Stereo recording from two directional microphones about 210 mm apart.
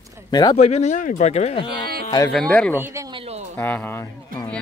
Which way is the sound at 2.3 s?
5° left (ahead or behind).